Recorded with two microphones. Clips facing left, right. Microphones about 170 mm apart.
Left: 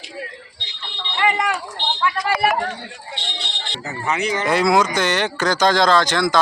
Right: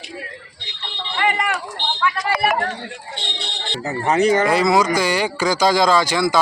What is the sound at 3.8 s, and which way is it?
Speech, 40° right (ahead or behind).